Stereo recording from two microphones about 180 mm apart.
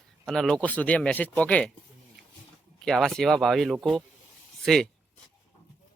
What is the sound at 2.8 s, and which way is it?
Speech, centre (ahead or behind).